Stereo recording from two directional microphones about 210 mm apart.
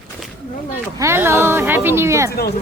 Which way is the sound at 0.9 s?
15° right (ahead or behind).